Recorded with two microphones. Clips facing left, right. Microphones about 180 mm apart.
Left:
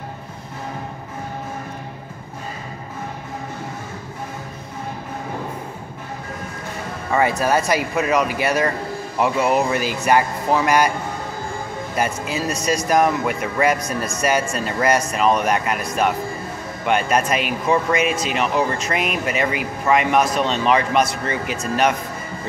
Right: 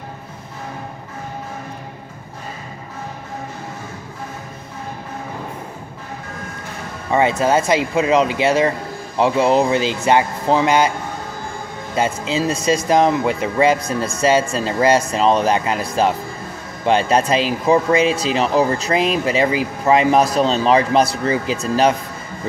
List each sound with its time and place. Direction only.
7.1 s speech: 20° right (ahead or behind)
11.9 s speech: 25° right (ahead or behind)